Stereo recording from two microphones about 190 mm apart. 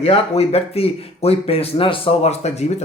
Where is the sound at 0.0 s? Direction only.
30° left (ahead or behind).